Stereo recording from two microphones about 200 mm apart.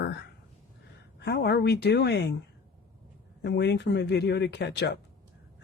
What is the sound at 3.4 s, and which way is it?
Speech, 60° left (ahead or behind).